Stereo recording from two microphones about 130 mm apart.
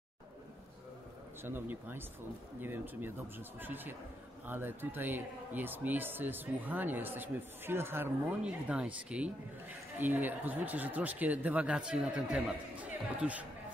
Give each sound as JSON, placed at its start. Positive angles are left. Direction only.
{"t": 1.4, "sound": "speech", "side_deg": -15}